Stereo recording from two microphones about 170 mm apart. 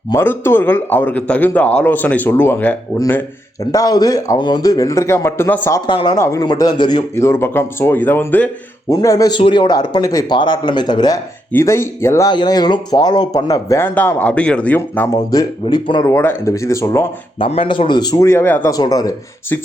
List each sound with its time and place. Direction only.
0.1 s a man's voice: 15° left (ahead or behind)
5.8 s a man's voice: 25° left (ahead or behind)
17.4 s speech: 30° left (ahead or behind)